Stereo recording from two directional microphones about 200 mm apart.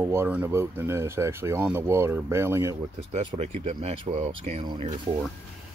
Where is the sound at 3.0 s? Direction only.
30° right (ahead or behind).